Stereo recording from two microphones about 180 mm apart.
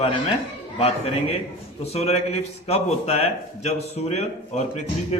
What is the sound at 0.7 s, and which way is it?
A man's voice, 35° left (ahead or behind).